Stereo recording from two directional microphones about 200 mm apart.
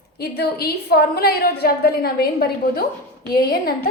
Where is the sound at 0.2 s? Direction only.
50° left (ahead or behind).